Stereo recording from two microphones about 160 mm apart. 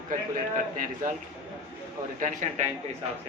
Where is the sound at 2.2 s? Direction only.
50° right (ahead or behind).